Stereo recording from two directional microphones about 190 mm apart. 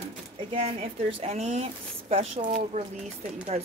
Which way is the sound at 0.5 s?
30° right (ahead or behind).